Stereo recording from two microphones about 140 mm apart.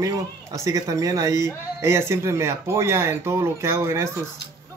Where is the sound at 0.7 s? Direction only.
25° right (ahead or behind).